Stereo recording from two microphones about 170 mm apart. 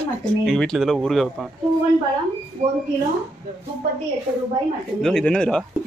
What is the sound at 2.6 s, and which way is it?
Speech, 45° right (ahead or behind).